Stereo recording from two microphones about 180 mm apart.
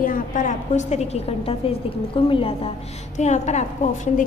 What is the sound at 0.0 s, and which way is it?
A woman's voice, 50° left (ahead or behind).